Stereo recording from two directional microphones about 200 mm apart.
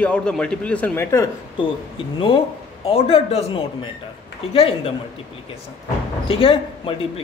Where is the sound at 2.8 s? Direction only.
30° left (ahead or behind).